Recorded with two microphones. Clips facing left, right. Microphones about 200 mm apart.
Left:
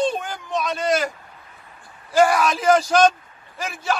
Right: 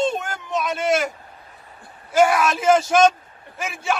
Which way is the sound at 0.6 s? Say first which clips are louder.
Right 1 dB; 5° right (ahead or behind).